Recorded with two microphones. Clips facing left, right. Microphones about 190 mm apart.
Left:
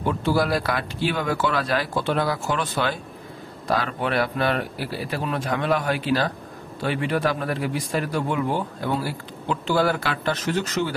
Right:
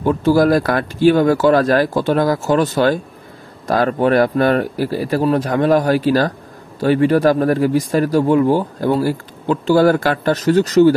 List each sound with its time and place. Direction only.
0.0 s speech: 40° right (ahead or behind)